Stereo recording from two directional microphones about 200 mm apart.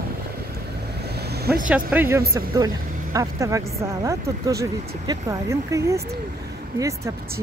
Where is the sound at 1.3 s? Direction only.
50° right (ahead or behind).